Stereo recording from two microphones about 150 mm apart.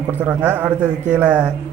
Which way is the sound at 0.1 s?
10° right (ahead or behind).